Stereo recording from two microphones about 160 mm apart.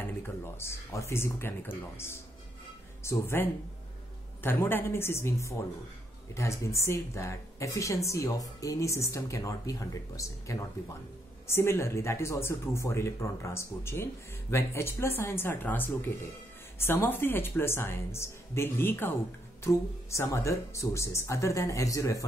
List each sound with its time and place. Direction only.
0.6 s speech: 15° left (ahead or behind)
3.0 s speech: 15° left (ahead or behind)